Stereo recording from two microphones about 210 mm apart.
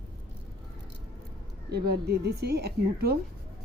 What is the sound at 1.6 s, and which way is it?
Speech, 50° right (ahead or behind).